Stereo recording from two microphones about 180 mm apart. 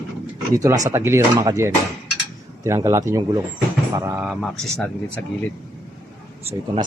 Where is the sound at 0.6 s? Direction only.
15° right (ahead or behind).